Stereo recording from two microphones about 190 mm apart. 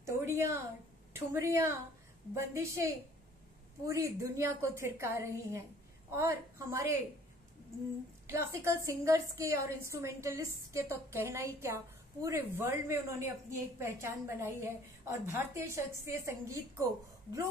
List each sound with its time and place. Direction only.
0.0 s a sound: 15° right (ahead or behind)
1.1 s a woman's voice: 15° right (ahead or behind)
8.3 s a woman's voice: 15° right (ahead or behind)